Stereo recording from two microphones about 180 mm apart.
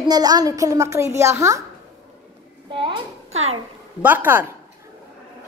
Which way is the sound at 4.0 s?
10° right (ahead or behind).